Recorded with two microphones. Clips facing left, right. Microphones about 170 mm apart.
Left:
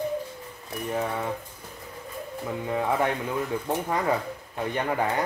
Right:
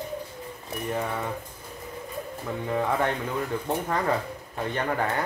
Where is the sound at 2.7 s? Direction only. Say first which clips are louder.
Even; 10° left (ahead or behind).